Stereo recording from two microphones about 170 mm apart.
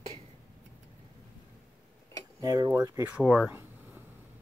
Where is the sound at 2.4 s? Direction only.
25° right (ahead or behind).